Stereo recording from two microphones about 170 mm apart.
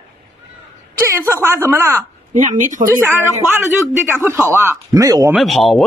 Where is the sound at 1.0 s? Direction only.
15° right (ahead or behind).